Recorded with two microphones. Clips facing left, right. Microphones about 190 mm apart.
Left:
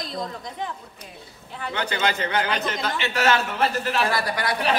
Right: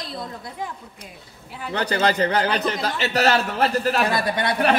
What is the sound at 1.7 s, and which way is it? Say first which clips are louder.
A man's voice: right 4 dB; 40° right (ahead or behind).